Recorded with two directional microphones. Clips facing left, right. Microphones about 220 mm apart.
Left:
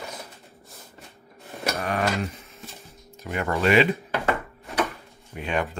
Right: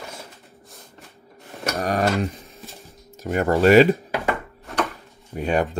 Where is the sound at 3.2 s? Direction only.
40° right (ahead or behind).